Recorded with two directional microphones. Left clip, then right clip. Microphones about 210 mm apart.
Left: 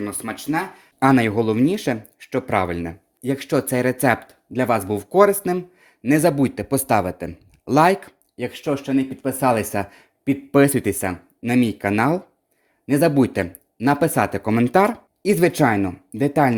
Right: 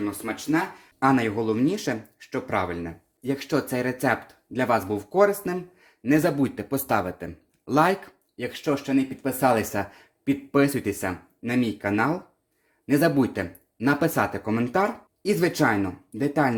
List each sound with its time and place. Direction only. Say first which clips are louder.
0.0 s speech: left 1 dB; 50° left (ahead or behind)
12.8 s speech: left 4 dB; 25° left (ahead or behind)